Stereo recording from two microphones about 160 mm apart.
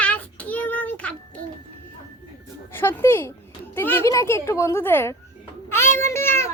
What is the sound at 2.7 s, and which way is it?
A child's voice, 15° left (ahead or behind).